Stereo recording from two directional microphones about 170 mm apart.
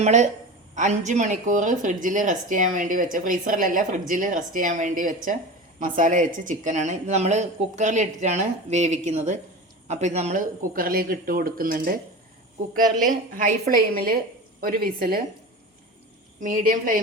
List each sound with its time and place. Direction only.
0.0 s speech: 45° right (ahead or behind)
16.4 s speech: 55° right (ahead or behind)